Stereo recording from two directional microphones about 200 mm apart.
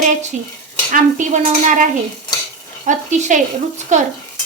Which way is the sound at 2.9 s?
40° right (ahead or behind).